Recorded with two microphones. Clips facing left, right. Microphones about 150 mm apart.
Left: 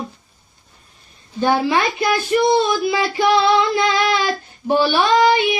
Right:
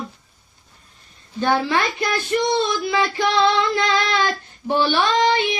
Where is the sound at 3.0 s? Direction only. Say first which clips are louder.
Left 2 dB; 15° left (ahead or behind).